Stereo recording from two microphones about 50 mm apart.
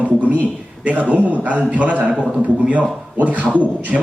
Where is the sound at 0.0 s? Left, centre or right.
Right.